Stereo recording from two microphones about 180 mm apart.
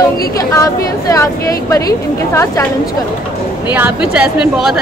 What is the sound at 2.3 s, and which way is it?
Speech, 15° left (ahead or behind).